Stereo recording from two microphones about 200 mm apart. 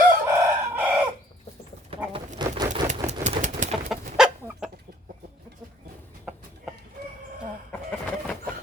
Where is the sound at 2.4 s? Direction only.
20° right (ahead or behind).